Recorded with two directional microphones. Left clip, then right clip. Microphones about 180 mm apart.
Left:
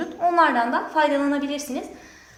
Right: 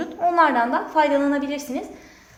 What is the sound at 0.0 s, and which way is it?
A woman's voice, 35° right (ahead or behind).